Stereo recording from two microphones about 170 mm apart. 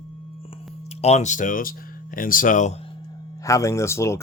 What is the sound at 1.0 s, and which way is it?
Speech, 40° left (ahead or behind).